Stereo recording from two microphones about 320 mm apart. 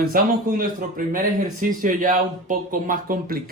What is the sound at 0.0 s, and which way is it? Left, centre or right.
Speech, right.